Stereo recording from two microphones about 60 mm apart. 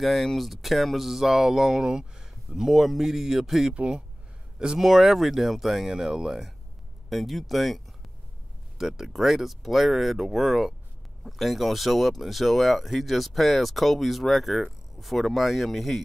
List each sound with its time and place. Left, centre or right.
0.0 s speech: centre
3.7 s speech: centre